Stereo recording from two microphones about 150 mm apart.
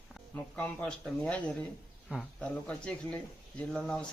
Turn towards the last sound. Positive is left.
turn(degrees=5)  # may be behind; listen again after turning